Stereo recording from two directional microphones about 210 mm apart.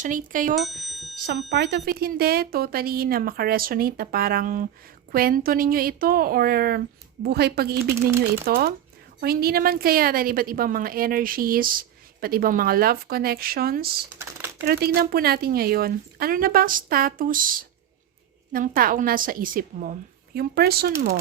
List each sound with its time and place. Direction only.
0.0 s speech: 40° right (ahead or behind)
0.5 s bicycle bell: centre (ahead or behind)
1.5 s a woman's voice: 50° right (ahead or behind)